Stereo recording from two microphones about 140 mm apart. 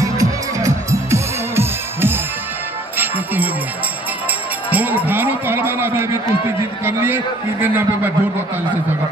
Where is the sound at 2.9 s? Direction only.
15° right (ahead or behind).